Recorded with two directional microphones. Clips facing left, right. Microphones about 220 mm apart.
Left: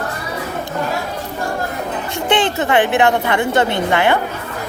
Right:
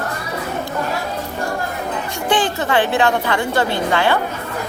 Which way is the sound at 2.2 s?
25° left (ahead or behind).